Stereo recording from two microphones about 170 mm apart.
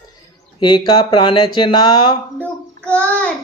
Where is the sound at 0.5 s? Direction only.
25° left (ahead or behind).